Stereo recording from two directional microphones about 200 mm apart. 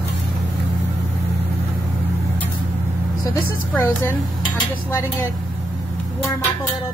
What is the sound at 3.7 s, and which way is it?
Speech, 10° left (ahead or behind).